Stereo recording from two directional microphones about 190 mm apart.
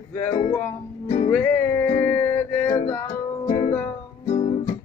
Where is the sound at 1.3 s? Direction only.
10° left (ahead or behind).